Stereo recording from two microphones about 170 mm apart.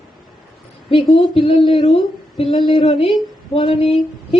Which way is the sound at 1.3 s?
35° left (ahead or behind).